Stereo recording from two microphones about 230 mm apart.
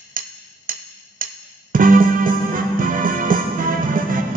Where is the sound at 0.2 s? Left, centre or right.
Right.